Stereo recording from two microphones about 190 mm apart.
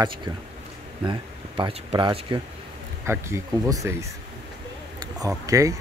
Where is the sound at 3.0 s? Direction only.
15° right (ahead or behind).